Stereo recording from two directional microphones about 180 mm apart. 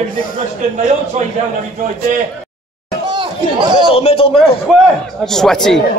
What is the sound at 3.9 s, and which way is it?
Speech, 30° left (ahead or behind).